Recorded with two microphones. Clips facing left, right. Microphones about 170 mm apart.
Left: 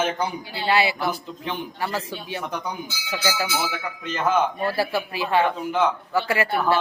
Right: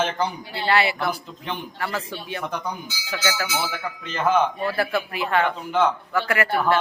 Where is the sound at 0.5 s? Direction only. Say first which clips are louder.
Even; 20° left (ahead or behind).